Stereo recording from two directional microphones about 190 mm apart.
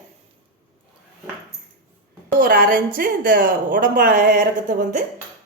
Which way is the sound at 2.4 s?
50° right (ahead or behind).